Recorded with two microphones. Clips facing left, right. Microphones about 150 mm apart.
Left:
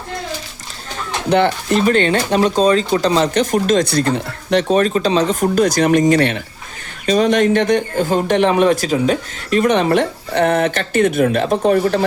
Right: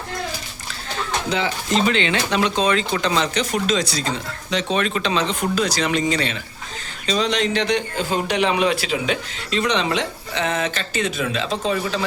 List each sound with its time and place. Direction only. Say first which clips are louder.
1.3 s a man's voice: left 9 dB; 60° left (ahead or behind)
4.8 s a man's voice: left 7 dB; 40° left (ahead or behind); by 12.0 s 60° left (ahead or behind)